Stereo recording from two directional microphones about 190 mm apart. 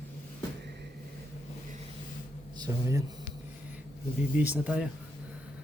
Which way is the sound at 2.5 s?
20° right (ahead or behind).